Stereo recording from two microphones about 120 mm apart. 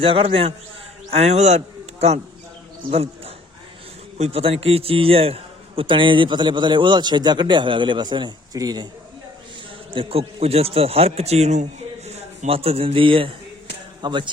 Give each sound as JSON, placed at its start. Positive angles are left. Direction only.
{"t": 0.0, "sound": "a man's voice", "side_deg": -50}
{"t": 1.1, "sound": "a man's voice", "side_deg": -65}
{"t": 2.9, "sound": "a sound", "side_deg": -55}
{"t": 4.2, "sound": "a man's voice", "side_deg": -55}
{"t": 9.9, "sound": "a man's voice", "side_deg": -50}